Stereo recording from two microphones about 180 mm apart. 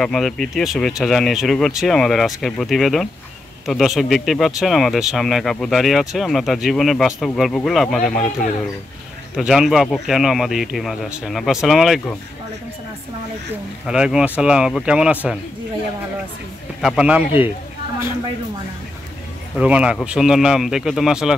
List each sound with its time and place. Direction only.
0.0 s speech: 5° left (ahead or behind)
13.8 s speech: 5° right (ahead or behind)
16.8 s speech: 5° right (ahead or behind)
19.5 s speech: 5° right (ahead or behind)